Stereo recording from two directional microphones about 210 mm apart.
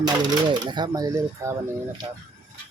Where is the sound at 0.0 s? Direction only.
20° right (ahead or behind).